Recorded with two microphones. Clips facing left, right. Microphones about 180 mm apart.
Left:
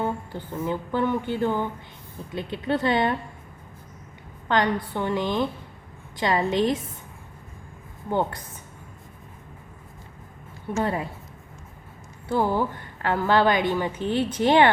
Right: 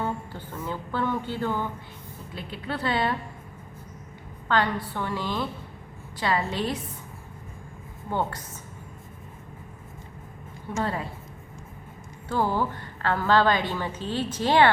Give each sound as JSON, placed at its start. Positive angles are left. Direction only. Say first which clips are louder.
{"t": 0.0, "sound": "a sound", "louder": "left 3 dB", "side_deg": 15}
{"t": 0.6, "sound": "a woman's voice", "louder": "left 4 dB", "side_deg": 15}
{"t": 4.4, "sound": "a woman's voice", "louder": "left 2 dB", "side_deg": 20}
{"t": 8.1, "sound": "a woman's voice", "louder": "left 3 dB", "side_deg": 15}
{"t": 10.8, "sound": "a woman's voice", "louder": "left 3 dB", "side_deg": 15}
{"t": 12.3, "sound": "a woman's voice", "louder": "left 2 dB", "side_deg": 15}